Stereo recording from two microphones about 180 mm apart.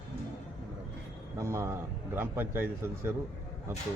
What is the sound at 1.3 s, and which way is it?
A man's voice, 15° right (ahead or behind).